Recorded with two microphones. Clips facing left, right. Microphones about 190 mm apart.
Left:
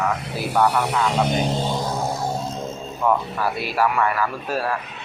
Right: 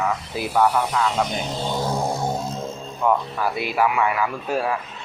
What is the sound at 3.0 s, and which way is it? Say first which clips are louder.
A man's voice: even; centre (ahead or behind).